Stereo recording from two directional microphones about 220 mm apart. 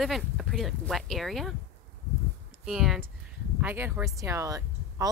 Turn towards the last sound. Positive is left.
turn(degrees=-15)  # may be behind; listen again after turning